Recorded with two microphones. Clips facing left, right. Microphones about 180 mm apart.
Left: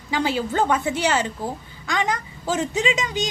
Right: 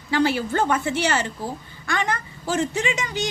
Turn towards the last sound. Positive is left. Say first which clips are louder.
# left 2 dB
turn(degrees=20)  # may be behind; listen again after turning